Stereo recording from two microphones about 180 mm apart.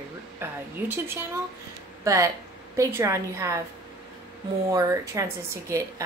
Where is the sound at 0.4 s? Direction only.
15° right (ahead or behind).